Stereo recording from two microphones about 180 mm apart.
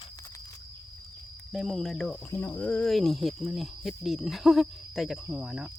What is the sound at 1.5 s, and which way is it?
Speech, centre (ahead or behind).